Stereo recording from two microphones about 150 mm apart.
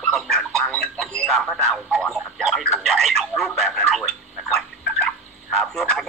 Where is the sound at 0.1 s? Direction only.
Centre (ahead or behind).